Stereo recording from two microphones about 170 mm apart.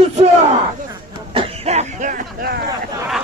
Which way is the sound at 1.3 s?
35° right (ahead or behind).